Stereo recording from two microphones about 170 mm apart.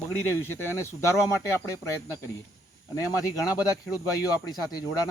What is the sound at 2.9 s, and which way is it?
Speech, 20° left (ahead or behind).